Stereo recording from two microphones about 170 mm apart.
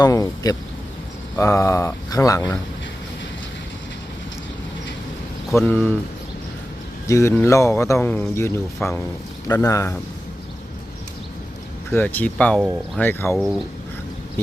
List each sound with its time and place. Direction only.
0.0 s speech: 20° left (ahead or behind)
5.5 s speech: 15° left (ahead or behind)
7.1 s speech: 15° left (ahead or behind)
11.9 s speech: 10° left (ahead or behind)
13.3 s speech: centre (ahead or behind)